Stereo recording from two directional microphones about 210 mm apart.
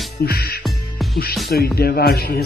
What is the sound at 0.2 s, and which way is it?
Music, 50° left (ahead or behind).